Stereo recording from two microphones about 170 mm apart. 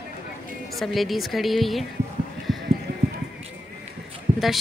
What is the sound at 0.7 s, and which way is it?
A woman's voice, centre (ahead or behind).